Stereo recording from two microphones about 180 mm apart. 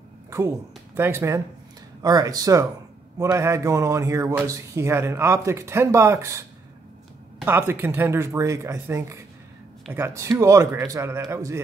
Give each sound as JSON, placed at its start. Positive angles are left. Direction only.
{"t": 0.3, "sound": "speech", "side_deg": -15}
{"t": 7.4, "sound": "speech", "side_deg": -10}